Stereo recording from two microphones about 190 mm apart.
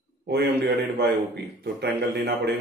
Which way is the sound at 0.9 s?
60° right (ahead or behind).